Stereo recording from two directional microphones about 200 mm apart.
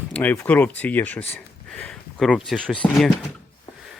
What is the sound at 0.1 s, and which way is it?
Speech, 10° left (ahead or behind).